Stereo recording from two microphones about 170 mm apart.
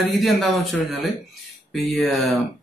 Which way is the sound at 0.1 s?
Centre (ahead or behind).